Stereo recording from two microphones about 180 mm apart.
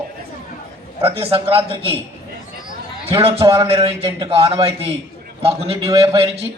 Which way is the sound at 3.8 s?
30° right (ahead or behind).